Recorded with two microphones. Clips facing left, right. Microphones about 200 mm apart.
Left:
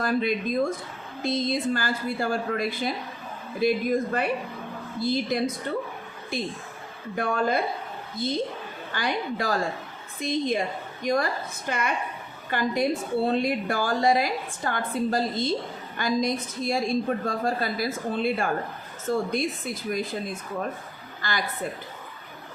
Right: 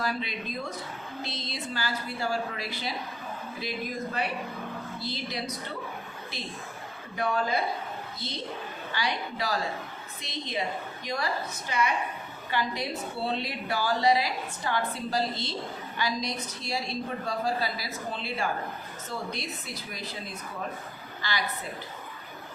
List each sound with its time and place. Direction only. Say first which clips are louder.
0.0 s a woman's voice: left 8 dB; 50° left (ahead or behind)
4.9 s a woman's voice: left 12 dB; 50° left (ahead or behind)
8.9 s a woman's voice: left 4 dB; 50° left (ahead or behind)